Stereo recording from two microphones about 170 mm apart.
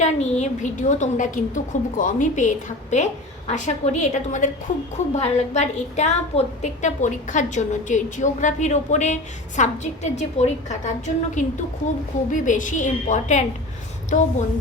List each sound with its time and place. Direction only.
0.0 s a woman's voice: 40° left (ahead or behind)